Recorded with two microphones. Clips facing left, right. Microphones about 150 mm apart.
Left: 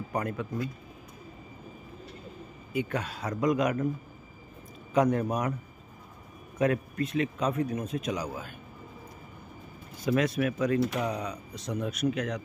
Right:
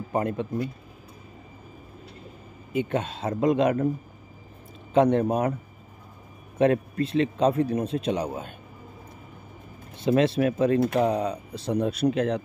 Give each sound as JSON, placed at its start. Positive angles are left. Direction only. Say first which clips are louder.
{"t": 0.1, "sound": "speech", "louder": "right 6 dB", "side_deg": -25}
{"t": 2.7, "sound": "speech", "louder": "right 5 dB", "side_deg": -25}
{"t": 4.9, "sound": "speech", "louder": "right 5 dB", "side_deg": -25}
{"t": 6.6, "sound": "speech", "louder": "right 5 dB", "side_deg": -30}
{"t": 9.9, "sound": "speech", "louder": "right 5 dB", "side_deg": -25}